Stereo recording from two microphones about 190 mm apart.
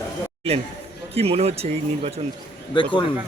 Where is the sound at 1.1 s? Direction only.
30° right (ahead or behind).